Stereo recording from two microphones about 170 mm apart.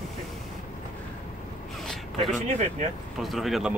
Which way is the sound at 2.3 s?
45° right (ahead or behind).